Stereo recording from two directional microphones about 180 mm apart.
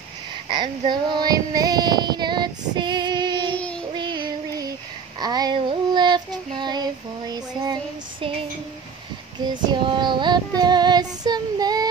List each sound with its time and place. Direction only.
0.5 s female singing: 25° right (ahead or behind)
5.2 s child singing: 20° right (ahead or behind)
9.5 s child singing: 25° right (ahead or behind)